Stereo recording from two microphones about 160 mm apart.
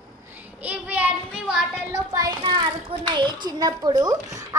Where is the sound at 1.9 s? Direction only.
20° right (ahead or behind).